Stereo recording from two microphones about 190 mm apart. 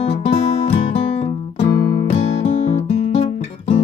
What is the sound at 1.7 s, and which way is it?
Music, 25° left (ahead or behind).